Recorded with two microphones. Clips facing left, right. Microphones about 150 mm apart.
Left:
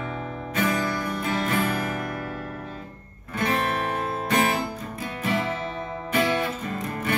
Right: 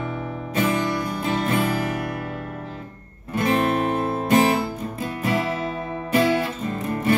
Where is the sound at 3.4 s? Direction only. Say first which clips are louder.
Right 5 dB; 30° right (ahead or behind).